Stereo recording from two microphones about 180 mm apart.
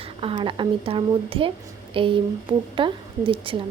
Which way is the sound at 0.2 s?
30° right (ahead or behind).